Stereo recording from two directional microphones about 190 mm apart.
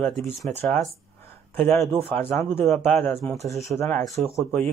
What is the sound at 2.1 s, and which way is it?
Speech, 10° left (ahead or behind).